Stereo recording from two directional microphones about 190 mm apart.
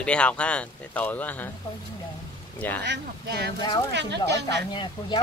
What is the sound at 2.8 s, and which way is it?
Speech, 65° right (ahead or behind).